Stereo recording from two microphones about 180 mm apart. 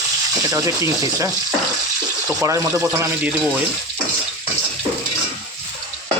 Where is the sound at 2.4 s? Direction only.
15° right (ahead or behind).